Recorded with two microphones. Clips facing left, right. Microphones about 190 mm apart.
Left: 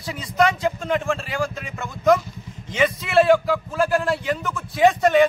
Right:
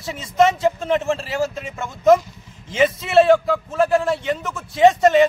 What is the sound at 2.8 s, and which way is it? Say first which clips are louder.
A man's voice: right 3 dB; 25° right (ahead or behind).